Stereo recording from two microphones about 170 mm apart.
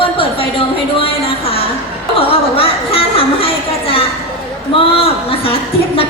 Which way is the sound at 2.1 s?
35° left (ahead or behind).